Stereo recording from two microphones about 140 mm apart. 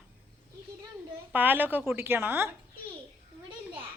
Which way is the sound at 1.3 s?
15° right (ahead or behind).